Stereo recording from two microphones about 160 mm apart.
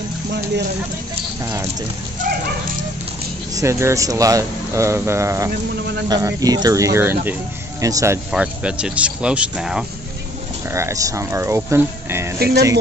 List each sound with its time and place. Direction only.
1.4 s speech: 20° right (ahead or behind)
2.3 s dog: 65° right (ahead or behind)
3.5 s speech: 20° right (ahead or behind)
8.3 s speech: 5° right (ahead or behind)
10.7 s speech: 20° right (ahead or behind)